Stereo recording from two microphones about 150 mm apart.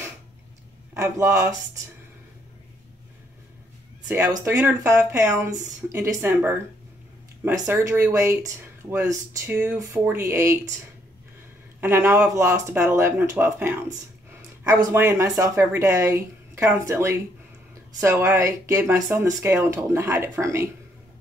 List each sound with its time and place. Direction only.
0.9 s speech: 20° right (ahead or behind)
4.5 s speech: 20° right (ahead or behind)
7.6 s speech: 15° right (ahead or behind)
11.8 s speech: 15° right (ahead or behind)